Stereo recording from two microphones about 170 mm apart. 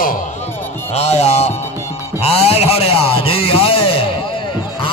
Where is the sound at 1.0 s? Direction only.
40° left (ahead or behind).